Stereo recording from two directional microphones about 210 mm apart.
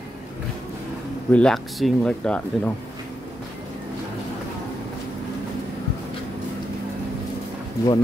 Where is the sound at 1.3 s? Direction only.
5° left (ahead or behind).